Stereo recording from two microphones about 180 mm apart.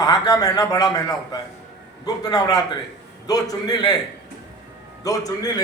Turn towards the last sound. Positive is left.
turn(degrees=20)  # may be behind; listen again after turning